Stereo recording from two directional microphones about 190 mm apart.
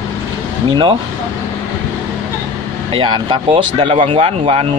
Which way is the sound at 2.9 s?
25° right (ahead or behind).